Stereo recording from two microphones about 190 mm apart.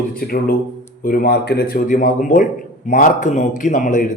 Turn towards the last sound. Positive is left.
turn(degrees=45)  # may be behind; listen again after turning